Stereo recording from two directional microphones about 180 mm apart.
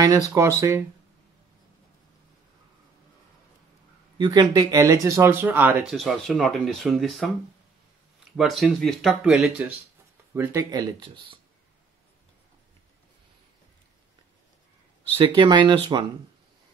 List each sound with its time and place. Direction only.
0.3 s speech: 15° right (ahead or behind)
4.2 s speech: 25° right (ahead or behind); by 7.3 s centre (ahead or behind)
8.4 s speech: centre (ahead or behind); by 11.3 s 25° right (ahead or behind)
15.3 s speech: 25° right (ahead or behind)